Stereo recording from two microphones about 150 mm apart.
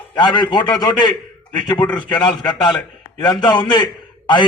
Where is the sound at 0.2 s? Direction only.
30° left (ahead or behind).